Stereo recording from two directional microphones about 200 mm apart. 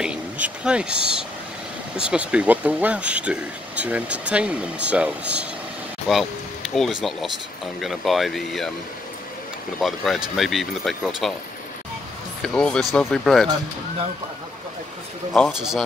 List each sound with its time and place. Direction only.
0.0 s speech: 5° right (ahead or behind)
9.8 s speech: centre (ahead or behind)
12.4 s speech: 5° left (ahead or behind)
15.3 s speech: centre (ahead or behind)